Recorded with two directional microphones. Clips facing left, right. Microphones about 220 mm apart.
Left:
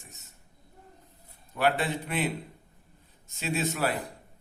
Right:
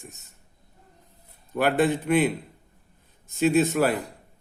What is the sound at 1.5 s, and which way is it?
Speech, 50° right (ahead or behind).